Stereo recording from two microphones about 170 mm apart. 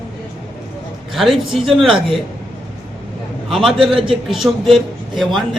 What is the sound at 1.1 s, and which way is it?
Speech, centre (ahead or behind).